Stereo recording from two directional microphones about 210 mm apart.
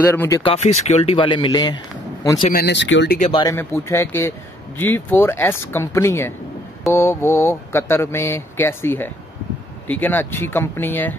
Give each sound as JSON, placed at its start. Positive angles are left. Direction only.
{"t": 0.0, "sound": "speech", "side_deg": 10}
{"t": 0.4, "sound": "speech", "side_deg": 30}
{"t": 2.5, "sound": "speech", "side_deg": 55}
{"t": 3.2, "sound": "speech", "side_deg": 30}
{"t": 3.4, "sound": "speech", "side_deg": 10}